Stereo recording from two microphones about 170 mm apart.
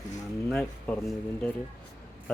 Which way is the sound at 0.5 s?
5° left (ahead or behind).